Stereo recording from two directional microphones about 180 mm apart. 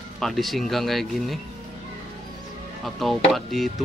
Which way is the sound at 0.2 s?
Centre (ahead or behind).